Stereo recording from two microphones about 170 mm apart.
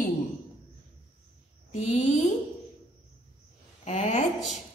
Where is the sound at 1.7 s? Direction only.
35° left (ahead or behind).